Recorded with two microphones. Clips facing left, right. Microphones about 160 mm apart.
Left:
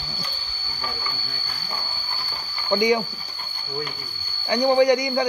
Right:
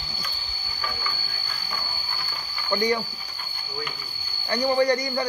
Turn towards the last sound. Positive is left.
turn(degrees=15)  # may be behind; listen again after turning